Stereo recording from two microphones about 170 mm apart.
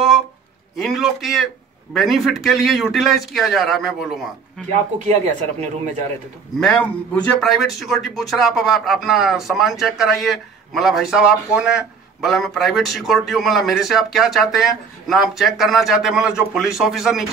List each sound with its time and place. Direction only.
0.7 s a man's voice: centre (ahead or behind)
4.9 s speech: 40° right (ahead or behind)
6.6 s a man's voice: 5° left (ahead or behind)